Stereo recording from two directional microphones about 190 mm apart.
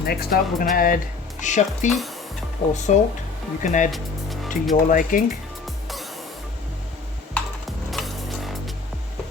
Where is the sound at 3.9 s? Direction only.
Centre (ahead or behind).